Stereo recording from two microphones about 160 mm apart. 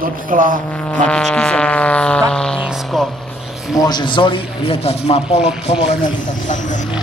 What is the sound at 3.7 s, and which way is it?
Speech, 25° left (ahead or behind).